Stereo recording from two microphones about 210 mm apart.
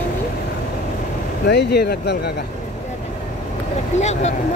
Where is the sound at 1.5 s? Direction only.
50° left (ahead or behind).